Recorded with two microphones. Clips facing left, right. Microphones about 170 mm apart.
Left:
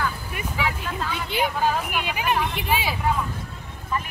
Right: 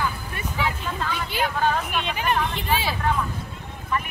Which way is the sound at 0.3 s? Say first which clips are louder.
Even; 10° left (ahead or behind).